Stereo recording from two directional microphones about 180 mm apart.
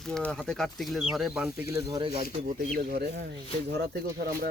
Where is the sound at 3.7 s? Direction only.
55° right (ahead or behind).